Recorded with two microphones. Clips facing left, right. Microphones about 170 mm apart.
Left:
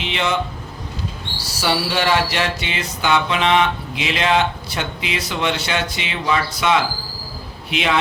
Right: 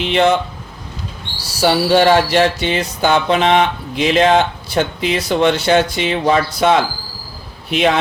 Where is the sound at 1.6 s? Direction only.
40° right (ahead or behind).